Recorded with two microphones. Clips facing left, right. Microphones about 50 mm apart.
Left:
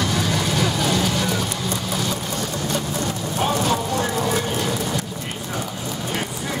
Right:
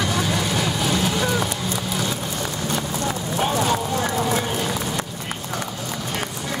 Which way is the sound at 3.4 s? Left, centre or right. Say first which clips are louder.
Even; centre.